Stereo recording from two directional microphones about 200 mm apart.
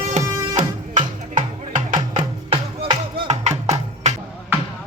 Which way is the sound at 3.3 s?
35° right (ahead or behind).